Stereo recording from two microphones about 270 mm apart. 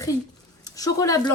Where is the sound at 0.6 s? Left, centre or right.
Centre.